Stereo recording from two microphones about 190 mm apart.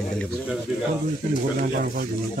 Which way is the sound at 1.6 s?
50° right (ahead or behind).